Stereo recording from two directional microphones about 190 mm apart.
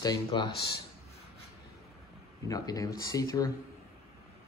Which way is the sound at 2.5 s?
20° left (ahead or behind).